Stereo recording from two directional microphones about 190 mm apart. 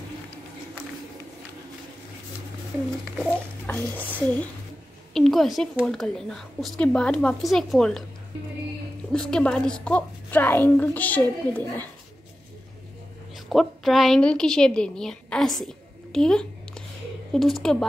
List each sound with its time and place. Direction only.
3.3 s a child's voice: 10° left (ahead or behind)
9.1 s a woman's voice: 5° left (ahead or behind)
13.5 s a woman's voice: centre (ahead or behind)